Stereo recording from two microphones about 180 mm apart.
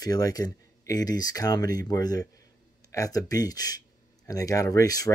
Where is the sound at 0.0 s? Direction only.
20° left (ahead or behind).